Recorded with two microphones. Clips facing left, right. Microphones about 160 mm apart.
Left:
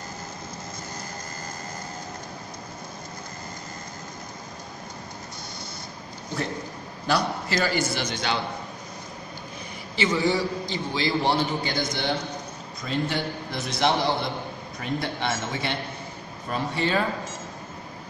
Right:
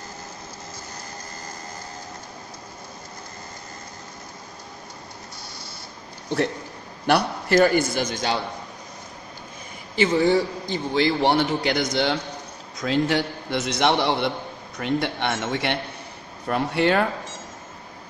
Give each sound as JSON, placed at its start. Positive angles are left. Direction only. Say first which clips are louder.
{"t": 7.1, "sound": "a man's voice", "louder": "right 5 dB", "side_deg": -60}
{"t": 9.9, "sound": "a man's voice", "louder": "right 5 dB", "side_deg": -55}